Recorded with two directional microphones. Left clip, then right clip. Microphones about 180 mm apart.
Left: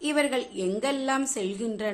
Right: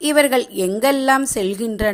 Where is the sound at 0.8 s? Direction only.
45° right (ahead or behind).